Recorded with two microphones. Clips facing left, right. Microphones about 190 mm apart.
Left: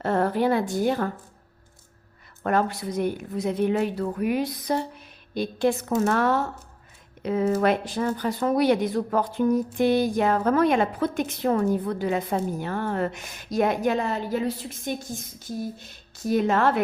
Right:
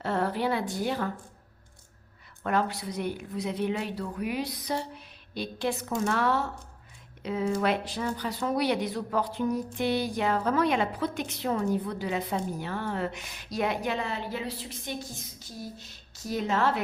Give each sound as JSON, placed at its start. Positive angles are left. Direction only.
{"t": 0.0, "sound": "a woman's voice", "side_deg": 50}
{"t": 2.4, "sound": "a woman's voice", "side_deg": 50}